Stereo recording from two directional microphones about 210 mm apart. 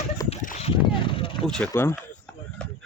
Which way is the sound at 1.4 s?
5° left (ahead or behind).